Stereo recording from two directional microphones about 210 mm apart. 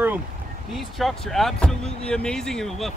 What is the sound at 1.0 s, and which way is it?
Speech, centre (ahead or behind).